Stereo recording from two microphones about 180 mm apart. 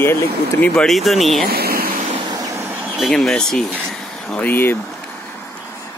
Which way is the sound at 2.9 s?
Centre (ahead or behind).